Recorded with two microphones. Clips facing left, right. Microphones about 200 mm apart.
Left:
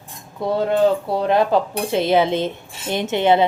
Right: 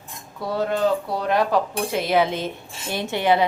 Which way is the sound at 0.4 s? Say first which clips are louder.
Left 5 dB; 20° left (ahead or behind).